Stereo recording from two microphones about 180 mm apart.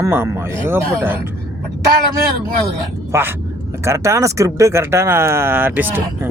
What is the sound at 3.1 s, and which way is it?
Speech, 15° right (ahead or behind).